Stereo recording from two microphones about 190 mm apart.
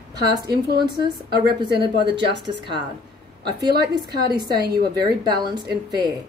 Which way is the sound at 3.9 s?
20° right (ahead or behind).